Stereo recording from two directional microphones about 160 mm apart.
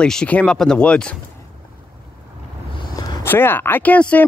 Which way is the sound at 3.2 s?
15° left (ahead or behind).